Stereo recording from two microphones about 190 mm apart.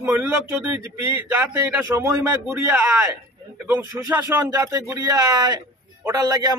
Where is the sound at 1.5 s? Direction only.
10° right (ahead or behind).